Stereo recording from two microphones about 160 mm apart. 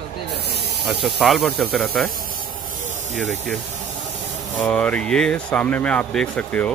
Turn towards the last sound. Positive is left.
turn(degrees=10)  # may be behind; listen again after turning